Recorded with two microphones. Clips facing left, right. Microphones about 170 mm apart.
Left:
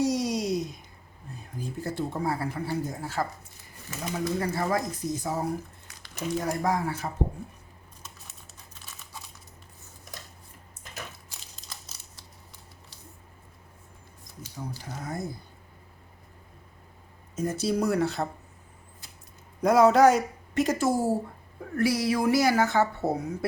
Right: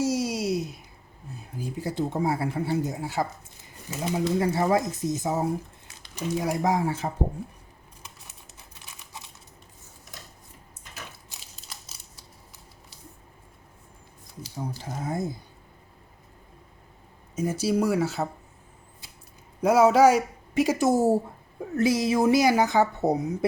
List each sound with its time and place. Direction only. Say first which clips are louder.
0.0 s a sound: even; 5° right (ahead or behind)
1.3 s speech: right 2 dB; 5° right (ahead or behind); by 7.1 s 25° right (ahead or behind)
14.9 s speech: right 5 dB; 25° right (ahead or behind)
17.3 s speech: right 2 dB; 10° right (ahead or behind)
19.6 s speech: right 1 dB; 5° right (ahead or behind)
20.8 s speech: right 4 dB; 25° right (ahead or behind)